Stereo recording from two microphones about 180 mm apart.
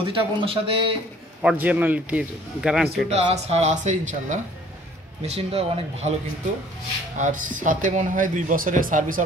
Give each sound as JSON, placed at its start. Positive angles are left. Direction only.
{"t": 0.1, "sound": "speech", "side_deg": -30}
{"t": 1.4, "sound": "a man's voice", "side_deg": -5}
{"t": 3.1, "sound": "speech", "side_deg": -35}
{"t": 7.2, "sound": "speech", "side_deg": -45}